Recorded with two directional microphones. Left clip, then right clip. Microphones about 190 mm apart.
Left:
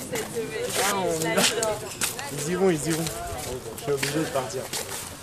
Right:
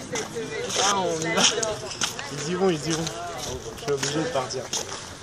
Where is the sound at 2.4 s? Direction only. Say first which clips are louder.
Left 1 dB; 25° left (ahead or behind).